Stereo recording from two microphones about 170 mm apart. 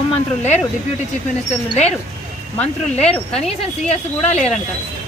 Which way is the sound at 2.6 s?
40° left (ahead or behind).